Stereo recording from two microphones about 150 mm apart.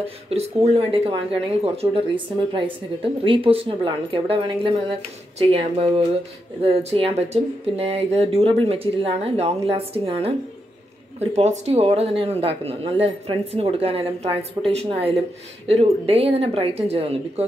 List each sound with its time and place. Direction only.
0.0 s speech: 45° right (ahead or behind)